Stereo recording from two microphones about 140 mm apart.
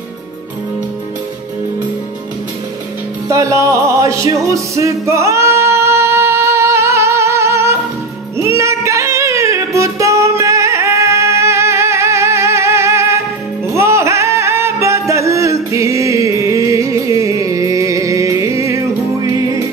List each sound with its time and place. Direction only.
3.3 s music: 20° right (ahead or behind)